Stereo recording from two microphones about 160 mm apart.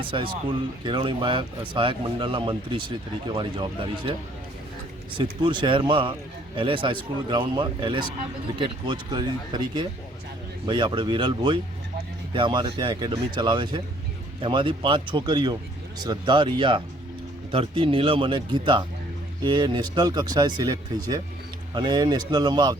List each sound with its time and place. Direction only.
0.0 s speech: 30° right (ahead or behind)
5.1 s speech: 30° right (ahead or behind)